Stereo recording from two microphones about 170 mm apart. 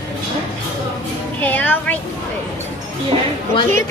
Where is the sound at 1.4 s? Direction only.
10° left (ahead or behind).